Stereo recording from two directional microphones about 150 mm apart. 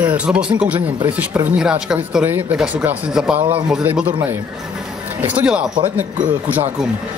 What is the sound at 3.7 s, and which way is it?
Speech, 10° right (ahead or behind).